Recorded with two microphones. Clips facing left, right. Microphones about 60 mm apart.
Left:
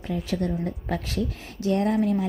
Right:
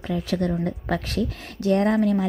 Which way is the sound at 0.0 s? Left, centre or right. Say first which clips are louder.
Right 3 dB; right.